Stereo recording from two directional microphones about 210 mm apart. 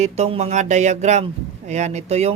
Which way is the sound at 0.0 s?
30° right (ahead or behind).